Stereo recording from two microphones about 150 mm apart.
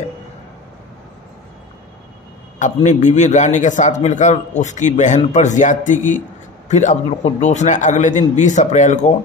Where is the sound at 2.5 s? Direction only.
55° left (ahead or behind).